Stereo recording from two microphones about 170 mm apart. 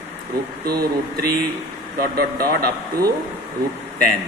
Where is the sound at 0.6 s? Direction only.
65° right (ahead or behind).